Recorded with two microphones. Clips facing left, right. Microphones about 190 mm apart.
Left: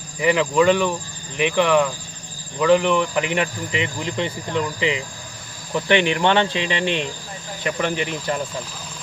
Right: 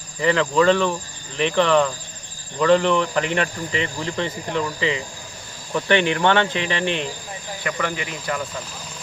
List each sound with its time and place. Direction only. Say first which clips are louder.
0.2 s speech: left 1 dB; 10° left (ahead or behind)